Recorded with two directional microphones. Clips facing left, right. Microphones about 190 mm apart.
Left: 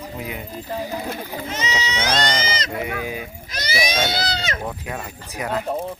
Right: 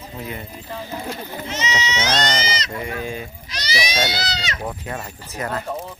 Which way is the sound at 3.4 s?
50° left (ahead or behind).